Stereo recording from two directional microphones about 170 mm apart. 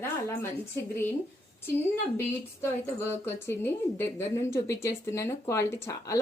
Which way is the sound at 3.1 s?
15° left (ahead or behind).